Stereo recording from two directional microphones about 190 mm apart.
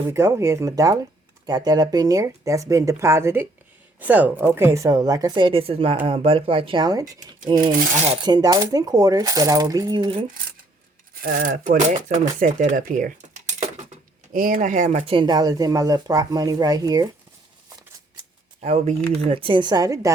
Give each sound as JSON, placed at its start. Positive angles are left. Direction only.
{"t": 0.1, "sound": "speech", "side_deg": -15}
{"t": 7.5, "sound": "cutlery", "side_deg": -45}
{"t": 8.0, "sound": "speech", "side_deg": -30}
{"t": 11.2, "sound": "cutlery", "side_deg": -50}
{"t": 12.0, "sound": "speech", "side_deg": -45}
{"t": 18.6, "sound": "speech", "side_deg": -35}